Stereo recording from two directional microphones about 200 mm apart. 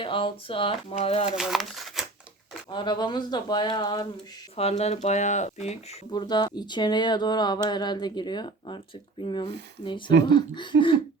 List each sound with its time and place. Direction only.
0.0 s speech: 25° left (ahead or behind)
1.4 s speech: centre (ahead or behind)
2.6 s speech: 20° left (ahead or behind)
6.1 s speech: 20° left (ahead or behind)